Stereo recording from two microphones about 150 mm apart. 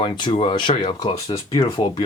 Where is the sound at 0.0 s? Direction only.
35° left (ahead or behind).